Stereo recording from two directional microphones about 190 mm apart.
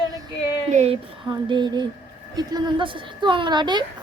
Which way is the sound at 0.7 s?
35° right (ahead or behind).